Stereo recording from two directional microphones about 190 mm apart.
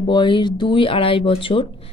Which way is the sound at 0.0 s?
25° left (ahead or behind).